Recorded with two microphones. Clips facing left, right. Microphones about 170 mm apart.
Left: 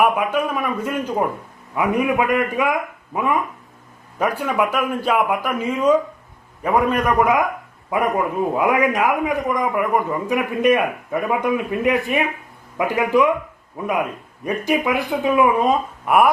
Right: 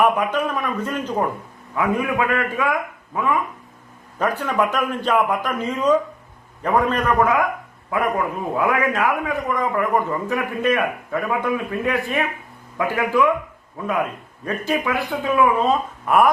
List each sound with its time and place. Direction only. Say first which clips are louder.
0.0 s a man's voice: left 1 dB; 10° left (ahead or behind)
4.2 s a man's voice: left 1 dB; 10° left (ahead or behind)
8.5 s a man's voice: left 1 dB; 20° left (ahead or behind)